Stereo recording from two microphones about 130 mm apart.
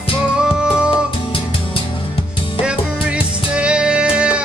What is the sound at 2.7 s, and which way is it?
Music, 10° right (ahead or behind).